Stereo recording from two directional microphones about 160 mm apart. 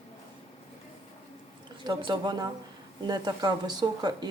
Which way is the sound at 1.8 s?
30° right (ahead or behind).